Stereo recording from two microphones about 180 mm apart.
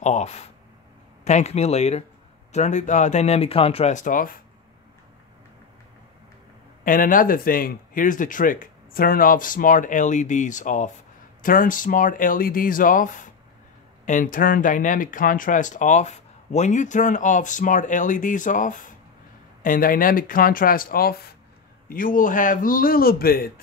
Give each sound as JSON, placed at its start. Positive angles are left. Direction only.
{"t": 0.0, "sound": "speech", "side_deg": 40}
{"t": 6.8, "sound": "speech", "side_deg": 50}